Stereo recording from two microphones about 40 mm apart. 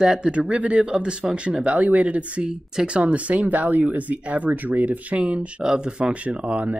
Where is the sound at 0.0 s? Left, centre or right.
Centre.